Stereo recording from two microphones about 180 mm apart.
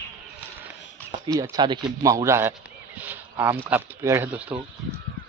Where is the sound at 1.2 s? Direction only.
20° right (ahead or behind).